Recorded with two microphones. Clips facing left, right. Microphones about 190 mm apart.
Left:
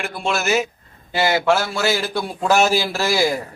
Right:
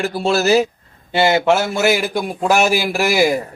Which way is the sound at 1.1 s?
25° right (ahead or behind).